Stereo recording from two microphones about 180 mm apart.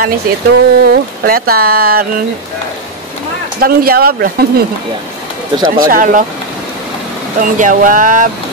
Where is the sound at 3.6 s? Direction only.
55° right (ahead or behind).